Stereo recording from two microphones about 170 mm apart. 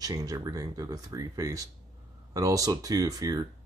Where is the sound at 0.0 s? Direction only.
20° right (ahead or behind).